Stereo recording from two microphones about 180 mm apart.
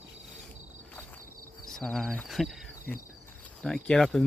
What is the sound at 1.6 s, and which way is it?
Speech, centre (ahead or behind).